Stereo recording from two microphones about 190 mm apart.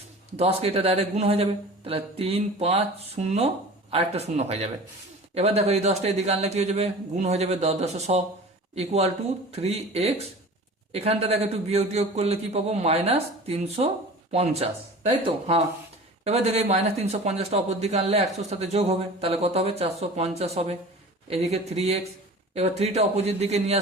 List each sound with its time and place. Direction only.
0.3 s a man's voice: 30° right (ahead or behind)